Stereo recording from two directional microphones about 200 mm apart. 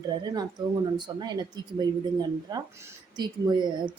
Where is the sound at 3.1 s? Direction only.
20° right (ahead or behind).